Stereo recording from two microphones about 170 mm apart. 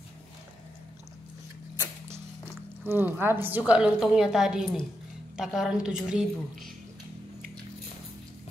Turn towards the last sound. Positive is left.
turn(degrees=0)  # may be behind; listen again after turning